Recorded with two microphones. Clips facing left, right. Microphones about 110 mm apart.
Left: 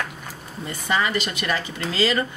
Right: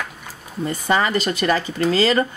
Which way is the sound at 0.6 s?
40° right (ahead or behind).